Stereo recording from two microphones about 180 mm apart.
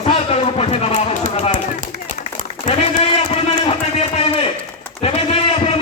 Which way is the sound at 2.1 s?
50° right (ahead or behind).